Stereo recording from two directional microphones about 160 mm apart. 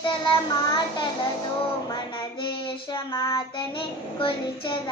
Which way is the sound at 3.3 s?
35° left (ahead or behind).